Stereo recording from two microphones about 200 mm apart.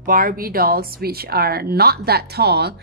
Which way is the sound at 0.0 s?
45° right (ahead or behind).